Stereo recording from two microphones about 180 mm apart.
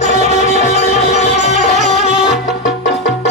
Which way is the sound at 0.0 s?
40° left (ahead or behind).